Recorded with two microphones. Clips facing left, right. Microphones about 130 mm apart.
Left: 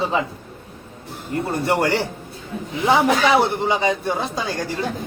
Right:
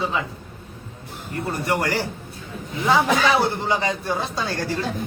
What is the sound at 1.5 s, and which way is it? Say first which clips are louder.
A man's voice: left 4 dB; 25° left (ahead or behind).